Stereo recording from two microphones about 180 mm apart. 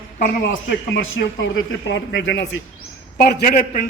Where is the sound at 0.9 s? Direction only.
90° left.